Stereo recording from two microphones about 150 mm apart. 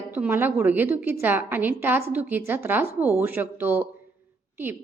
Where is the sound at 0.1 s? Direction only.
15° right (ahead or behind).